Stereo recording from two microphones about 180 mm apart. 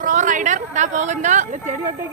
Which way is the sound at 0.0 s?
45° right (ahead or behind).